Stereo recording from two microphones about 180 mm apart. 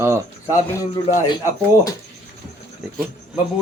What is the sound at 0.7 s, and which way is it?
Speech, 15° left (ahead or behind).